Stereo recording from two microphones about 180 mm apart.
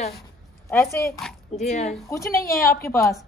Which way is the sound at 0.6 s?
15° left (ahead or behind).